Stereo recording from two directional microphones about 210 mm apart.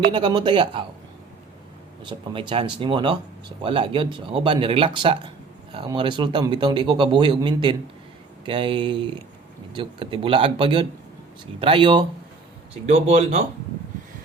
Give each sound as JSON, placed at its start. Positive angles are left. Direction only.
{"t": 0.1, "sound": "speech", "side_deg": -20}
{"t": 2.0, "sound": "speech", "side_deg": -25}